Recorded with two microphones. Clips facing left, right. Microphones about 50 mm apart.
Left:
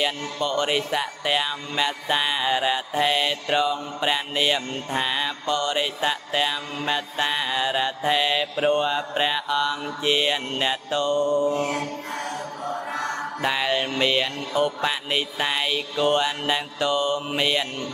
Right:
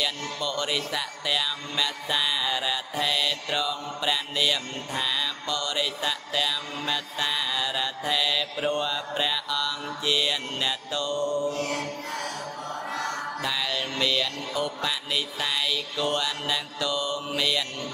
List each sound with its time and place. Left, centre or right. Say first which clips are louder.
0.0 s speech: left 4 dB; left